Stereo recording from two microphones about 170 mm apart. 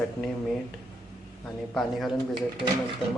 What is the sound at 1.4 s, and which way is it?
Speech, 5° left (ahead or behind).